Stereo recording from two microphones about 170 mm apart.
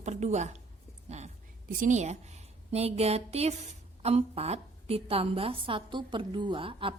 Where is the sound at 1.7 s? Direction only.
50° right (ahead or behind).